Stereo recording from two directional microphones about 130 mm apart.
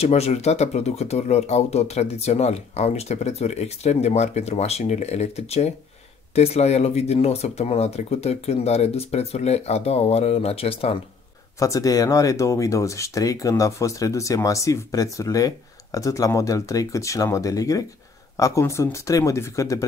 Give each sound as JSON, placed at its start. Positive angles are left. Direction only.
{"t": 0.0, "sound": "speech", "side_deg": 55}
{"t": 11.6, "sound": "speech", "side_deg": 25}